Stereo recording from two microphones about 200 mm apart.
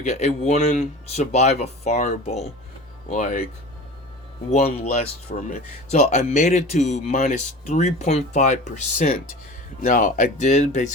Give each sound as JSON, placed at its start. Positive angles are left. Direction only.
{"t": 0.0, "sound": "speech", "side_deg": 35}
{"t": 4.4, "sound": "speech", "side_deg": 35}